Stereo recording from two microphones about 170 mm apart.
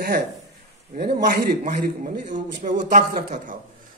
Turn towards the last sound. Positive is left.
turn(degrees=-50)  # may be behind; listen again after turning